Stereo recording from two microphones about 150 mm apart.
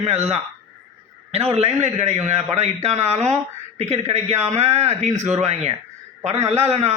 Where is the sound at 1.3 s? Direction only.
45° right (ahead or behind).